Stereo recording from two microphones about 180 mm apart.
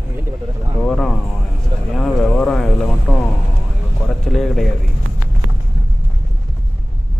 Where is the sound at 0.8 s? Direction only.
Centre (ahead or behind).